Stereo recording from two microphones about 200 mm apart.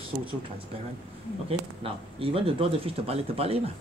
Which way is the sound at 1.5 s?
30° right (ahead or behind).